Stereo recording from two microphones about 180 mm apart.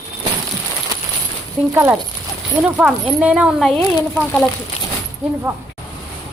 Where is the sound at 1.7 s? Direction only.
15° right (ahead or behind).